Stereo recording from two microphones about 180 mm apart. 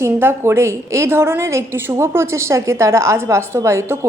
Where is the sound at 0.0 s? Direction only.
15° right (ahead or behind).